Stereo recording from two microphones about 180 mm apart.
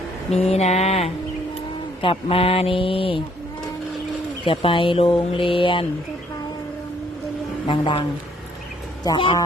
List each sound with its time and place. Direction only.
0.3 s speech: 35° left (ahead or behind)
4.4 s speech: 30° left (ahead or behind)
7.7 s speech: 25° left (ahead or behind)
9.0 s speech: 25° left (ahead or behind)